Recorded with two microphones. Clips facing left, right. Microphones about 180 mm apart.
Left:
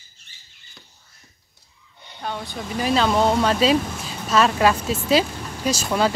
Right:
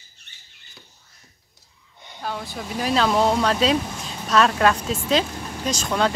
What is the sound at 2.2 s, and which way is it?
Speech, centre (ahead or behind).